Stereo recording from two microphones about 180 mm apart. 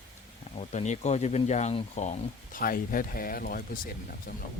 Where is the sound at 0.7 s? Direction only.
40° left (ahead or behind).